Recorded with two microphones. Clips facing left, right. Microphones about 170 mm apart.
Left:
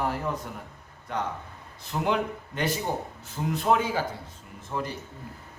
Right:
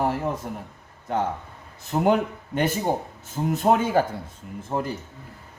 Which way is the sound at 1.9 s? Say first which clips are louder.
Right 6 dB; 45° right (ahead or behind).